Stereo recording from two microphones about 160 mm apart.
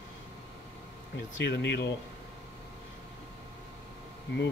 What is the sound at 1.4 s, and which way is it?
Speech, 90° left.